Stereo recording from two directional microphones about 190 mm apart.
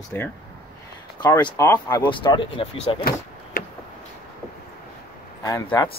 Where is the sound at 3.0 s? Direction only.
50° left (ahead or behind).